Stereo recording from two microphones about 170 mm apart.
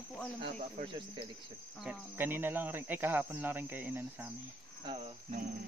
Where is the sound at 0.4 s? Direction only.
45° right (ahead or behind).